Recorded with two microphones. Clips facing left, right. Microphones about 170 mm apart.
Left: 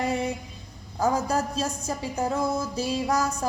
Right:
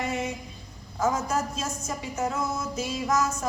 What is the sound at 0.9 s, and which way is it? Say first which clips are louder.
Speech: left 2 dB; 35° left (ahead or behind).